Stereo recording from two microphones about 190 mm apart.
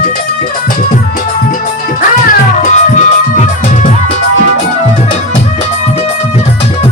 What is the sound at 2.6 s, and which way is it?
Music, 40° left (ahead or behind).